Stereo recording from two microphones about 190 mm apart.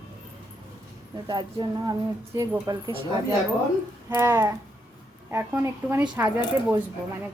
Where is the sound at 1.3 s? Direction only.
20° right (ahead or behind).